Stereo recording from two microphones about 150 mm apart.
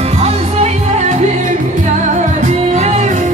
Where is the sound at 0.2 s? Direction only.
45° right (ahead or behind).